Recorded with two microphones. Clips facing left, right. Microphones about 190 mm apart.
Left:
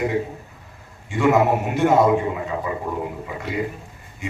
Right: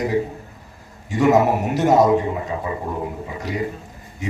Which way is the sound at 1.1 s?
40° right (ahead or behind).